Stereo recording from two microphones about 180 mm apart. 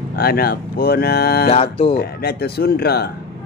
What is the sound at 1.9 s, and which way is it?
Speech, 60° left (ahead or behind).